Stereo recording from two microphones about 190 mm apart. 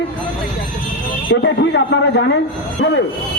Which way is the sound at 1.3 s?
70° left (ahead or behind).